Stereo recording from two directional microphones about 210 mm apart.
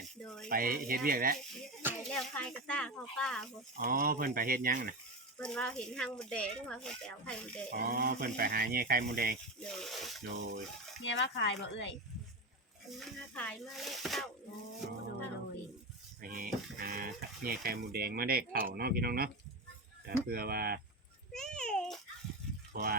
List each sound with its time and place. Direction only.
0.4 s speech: 40° right (ahead or behind)
2.0 s speech: 5° left (ahead or behind)
3.8 s speech: 40° right (ahead or behind)
5.4 s speech: 5° left (ahead or behind)
7.7 s speech: 50° right (ahead or behind)
9.6 s speech: centre (ahead or behind)
10.2 s speech: 50° right (ahead or behind)
11.1 s speech: 55° left (ahead or behind)
12.9 s speech: centre (ahead or behind)
16.2 s speech: 40° right (ahead or behind)
21.3 s speech: 5° left (ahead or behind)
22.7 s speech: 45° right (ahead or behind)